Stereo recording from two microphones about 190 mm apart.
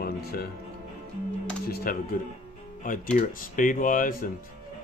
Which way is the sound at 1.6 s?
55° left (ahead or behind).